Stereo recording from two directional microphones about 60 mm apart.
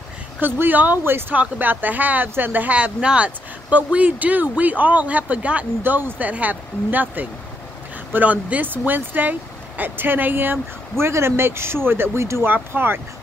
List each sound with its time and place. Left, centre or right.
0.4 s speech: right
5.8 s speech: right
12.4 s speech: right